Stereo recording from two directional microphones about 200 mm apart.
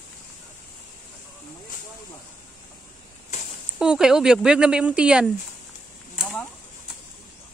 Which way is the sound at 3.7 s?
5° right (ahead or behind).